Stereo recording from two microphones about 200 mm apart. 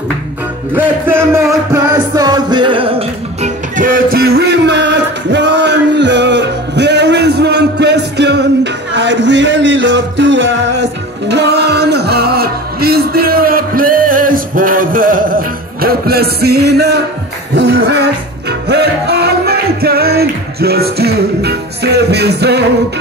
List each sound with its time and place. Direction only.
0.7 s music: 10° right (ahead or behind); by 22.7 s 55° right (ahead or behind)